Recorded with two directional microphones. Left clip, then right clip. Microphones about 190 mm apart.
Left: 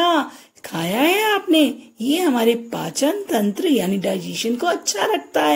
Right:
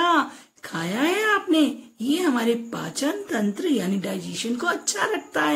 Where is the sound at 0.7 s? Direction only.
20° left (ahead or behind).